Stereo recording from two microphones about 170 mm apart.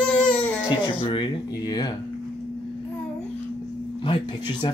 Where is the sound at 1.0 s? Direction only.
30° left (ahead or behind).